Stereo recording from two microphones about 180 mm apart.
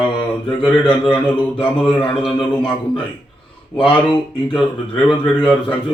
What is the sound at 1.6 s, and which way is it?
A man's voice, 30° left (ahead or behind).